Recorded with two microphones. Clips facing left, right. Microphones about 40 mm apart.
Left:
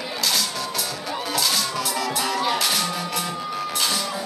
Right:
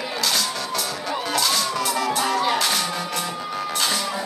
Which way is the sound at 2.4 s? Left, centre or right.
Centre.